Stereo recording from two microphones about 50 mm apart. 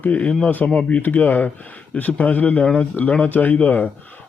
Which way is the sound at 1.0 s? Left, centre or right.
Left.